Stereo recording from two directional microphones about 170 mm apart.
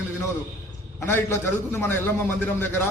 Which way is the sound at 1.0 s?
15° left (ahead or behind).